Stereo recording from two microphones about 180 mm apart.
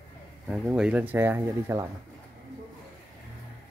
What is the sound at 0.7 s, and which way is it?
Speech, 5° right (ahead or behind).